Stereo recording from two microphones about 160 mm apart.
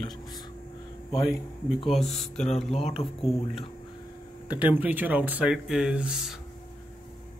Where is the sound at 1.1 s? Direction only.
25° left (ahead or behind).